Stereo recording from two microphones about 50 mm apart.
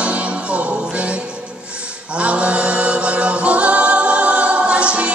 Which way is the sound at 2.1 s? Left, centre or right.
Right.